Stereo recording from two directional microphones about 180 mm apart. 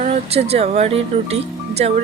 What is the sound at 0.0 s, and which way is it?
Speech, 35° right (ahead or behind).